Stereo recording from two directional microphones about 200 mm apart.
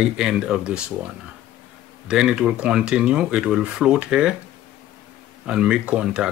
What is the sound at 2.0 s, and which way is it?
Speech, 5° right (ahead or behind).